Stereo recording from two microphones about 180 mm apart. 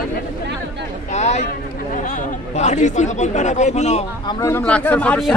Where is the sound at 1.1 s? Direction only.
40° left (ahead or behind).